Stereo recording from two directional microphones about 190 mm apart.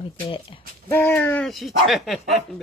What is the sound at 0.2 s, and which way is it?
Speech, 30° left (ahead or behind).